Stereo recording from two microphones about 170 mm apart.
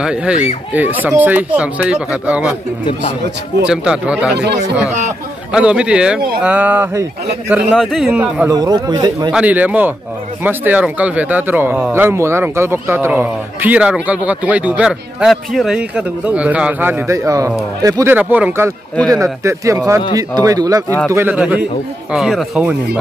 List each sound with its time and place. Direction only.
0.0 s a man's voice: 5° right (ahead or behind)
3.6 s a man's voice: 5° right (ahead or behind)
5.5 s a man's voice: 5° right (ahead or behind)
7.7 s a man's voice: centre (ahead or behind)
8.5 s speech: 20° right (ahead or behind)
9.3 s speech: 10° right (ahead or behind)
18.1 s a man's voice: 10° right (ahead or behind)